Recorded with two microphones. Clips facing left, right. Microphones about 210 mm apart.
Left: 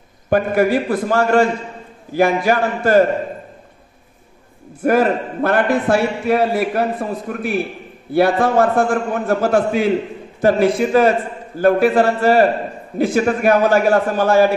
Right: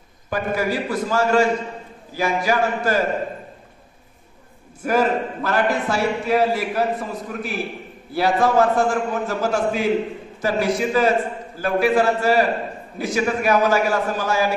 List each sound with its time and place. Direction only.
0.3 s a man's voice: 55° left (ahead or behind)
4.8 s a man's voice: 60° left (ahead or behind)